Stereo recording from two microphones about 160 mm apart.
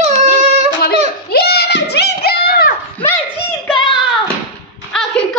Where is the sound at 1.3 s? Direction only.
80° left.